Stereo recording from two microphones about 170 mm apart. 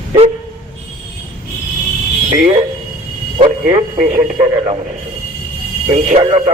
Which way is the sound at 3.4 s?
40° right (ahead or behind).